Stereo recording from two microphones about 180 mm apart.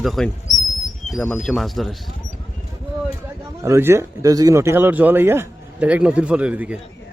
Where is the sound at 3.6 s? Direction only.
15° right (ahead or behind).